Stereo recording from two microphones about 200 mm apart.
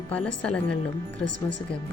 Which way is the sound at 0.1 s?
5° left (ahead or behind).